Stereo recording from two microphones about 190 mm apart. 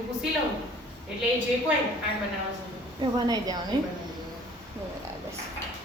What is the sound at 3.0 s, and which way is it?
Speech, 20° right (ahead or behind).